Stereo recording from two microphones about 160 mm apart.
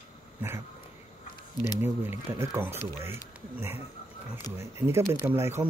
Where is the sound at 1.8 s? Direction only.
15° right (ahead or behind).